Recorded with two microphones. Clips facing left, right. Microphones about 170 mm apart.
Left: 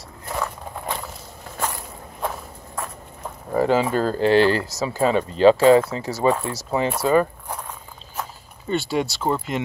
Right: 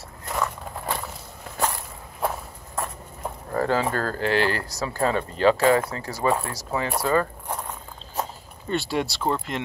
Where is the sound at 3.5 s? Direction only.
15° left (ahead or behind).